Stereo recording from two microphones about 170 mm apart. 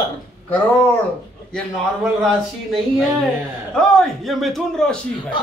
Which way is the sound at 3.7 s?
5° left (ahead or behind).